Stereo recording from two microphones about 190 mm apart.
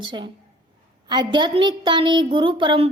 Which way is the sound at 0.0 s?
25° right (ahead or behind).